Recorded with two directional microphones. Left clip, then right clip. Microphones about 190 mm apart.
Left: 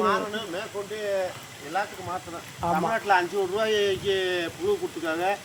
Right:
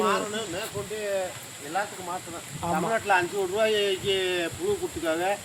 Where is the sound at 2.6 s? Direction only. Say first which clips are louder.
Left 3 dB; 35° left (ahead or behind).